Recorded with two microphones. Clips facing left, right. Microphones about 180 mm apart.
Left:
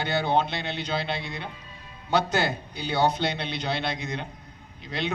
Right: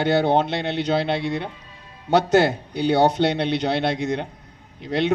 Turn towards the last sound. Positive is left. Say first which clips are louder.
# right 10 dB
turn(degrees=-65)  # may be behind; listen again after turning